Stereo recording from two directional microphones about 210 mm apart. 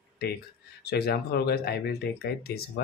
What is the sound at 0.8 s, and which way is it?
Speech, 50° left (ahead or behind).